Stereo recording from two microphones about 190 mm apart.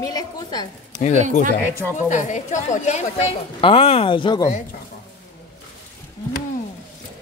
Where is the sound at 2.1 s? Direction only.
40° left (ahead or behind); by 4.5 s 25° left (ahead or behind).